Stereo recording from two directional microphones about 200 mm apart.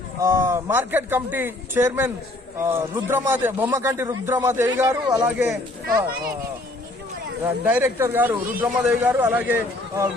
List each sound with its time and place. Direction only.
0.2 s a man's voice: 10° right (ahead or behind)
5.1 s speech: 5° right (ahead or behind)
5.9 s speech: 50° right (ahead or behind)
7.4 s a man's voice: 10° right (ahead or behind)